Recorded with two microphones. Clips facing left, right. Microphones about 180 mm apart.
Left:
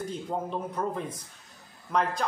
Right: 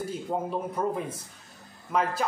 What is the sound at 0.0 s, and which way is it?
Speech, 5° right (ahead or behind).